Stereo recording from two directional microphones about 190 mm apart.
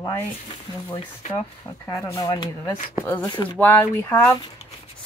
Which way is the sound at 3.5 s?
10° left (ahead or behind).